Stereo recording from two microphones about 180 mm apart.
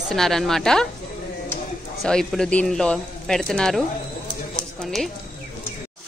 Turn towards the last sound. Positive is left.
turn(degrees=0)  # may be behind; listen again after turning